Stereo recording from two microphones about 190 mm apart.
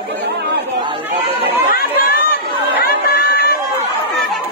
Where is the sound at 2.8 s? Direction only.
55° left (ahead or behind).